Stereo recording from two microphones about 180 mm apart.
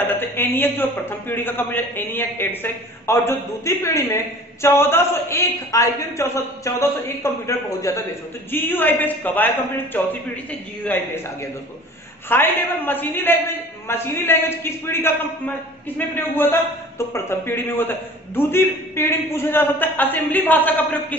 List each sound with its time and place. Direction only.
0.1 s a man's voice: 10° left (ahead or behind)
12.3 s a man's voice: 10° left (ahead or behind)